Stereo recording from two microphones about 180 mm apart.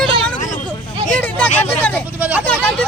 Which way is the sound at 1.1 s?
10° left (ahead or behind).